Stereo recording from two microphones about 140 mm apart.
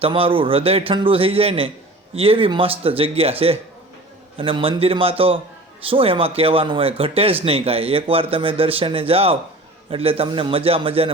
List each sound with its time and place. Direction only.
0.0 s a man's voice: 40° right (ahead or behind)